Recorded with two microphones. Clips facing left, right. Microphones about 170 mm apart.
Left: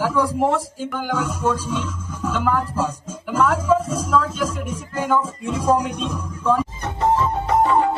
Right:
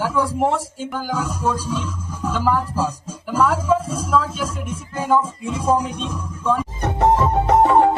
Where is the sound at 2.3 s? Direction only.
35° right (ahead or behind).